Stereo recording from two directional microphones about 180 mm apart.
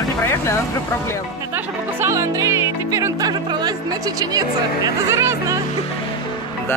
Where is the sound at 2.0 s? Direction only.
15° right (ahead or behind).